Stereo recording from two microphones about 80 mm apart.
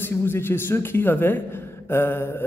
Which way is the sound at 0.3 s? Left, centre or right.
Left.